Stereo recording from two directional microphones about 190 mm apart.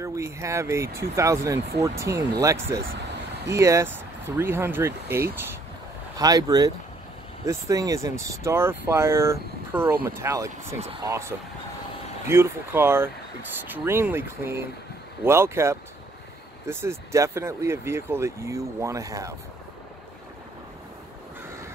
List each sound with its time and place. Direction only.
0.0 s speech: 15° right (ahead or behind)